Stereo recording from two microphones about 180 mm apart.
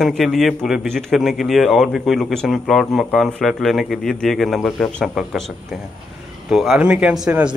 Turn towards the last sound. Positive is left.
turn(degrees=-5)  # may be behind; listen again after turning